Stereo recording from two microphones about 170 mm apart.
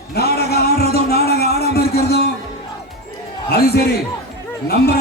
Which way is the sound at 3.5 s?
65° left (ahead or behind).